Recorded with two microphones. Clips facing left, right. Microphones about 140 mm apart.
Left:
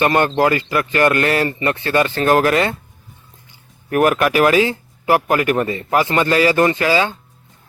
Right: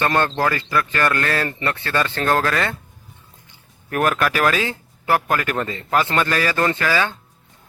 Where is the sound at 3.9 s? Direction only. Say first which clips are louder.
Left 5 dB; 15° left (ahead or behind).